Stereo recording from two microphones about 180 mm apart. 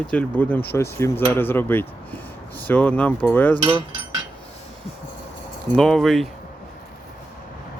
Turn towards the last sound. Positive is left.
turn(degrees=0)  # may be behind; listen again after turning